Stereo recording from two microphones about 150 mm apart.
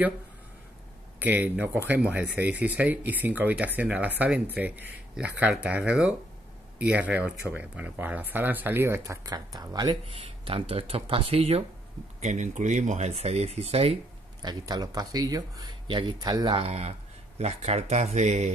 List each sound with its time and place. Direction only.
1.2 s speech: 10° right (ahead or behind)
10.0 s speech: 40° right (ahead or behind)
12.2 s speech: 50° right (ahead or behind)
14.4 s speech: 30° right (ahead or behind)
16.5 s speech: 45° right (ahead or behind)